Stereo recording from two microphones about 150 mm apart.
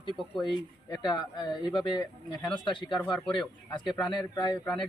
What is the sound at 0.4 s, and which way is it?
Speech, 30° left (ahead or behind).